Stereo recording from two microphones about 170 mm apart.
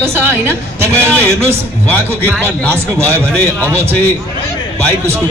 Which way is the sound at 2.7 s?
15° right (ahead or behind).